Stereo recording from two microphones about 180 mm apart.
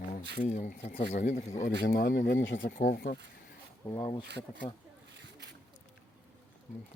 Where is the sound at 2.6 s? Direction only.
50° left (ahead or behind).